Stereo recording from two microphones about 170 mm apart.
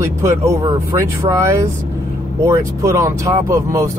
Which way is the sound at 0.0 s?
15° right (ahead or behind).